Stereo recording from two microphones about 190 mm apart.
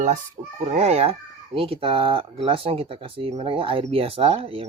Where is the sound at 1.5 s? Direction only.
30° right (ahead or behind).